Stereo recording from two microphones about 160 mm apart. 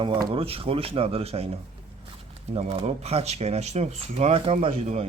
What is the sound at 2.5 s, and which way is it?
Speech, 40° right (ahead or behind).